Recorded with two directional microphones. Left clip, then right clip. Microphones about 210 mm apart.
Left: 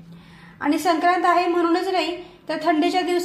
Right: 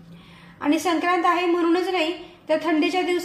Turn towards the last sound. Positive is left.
turn(degrees=25)  # may be behind; listen again after turning